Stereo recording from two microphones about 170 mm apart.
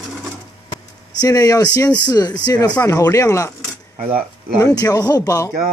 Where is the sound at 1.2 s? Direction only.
20° left (ahead or behind).